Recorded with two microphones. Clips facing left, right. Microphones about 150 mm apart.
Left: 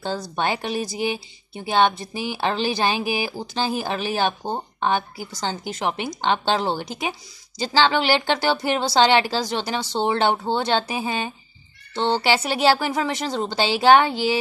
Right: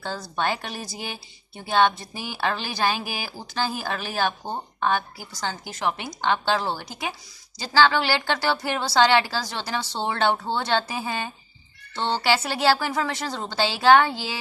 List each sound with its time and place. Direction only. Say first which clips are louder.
0.0 s speech: left 3 dB; 20° left (ahead or behind)